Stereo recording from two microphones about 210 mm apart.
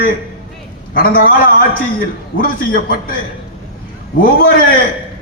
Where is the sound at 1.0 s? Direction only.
45° left (ahead or behind).